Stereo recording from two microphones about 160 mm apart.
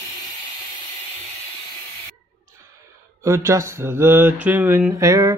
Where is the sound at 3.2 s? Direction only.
15° right (ahead or behind).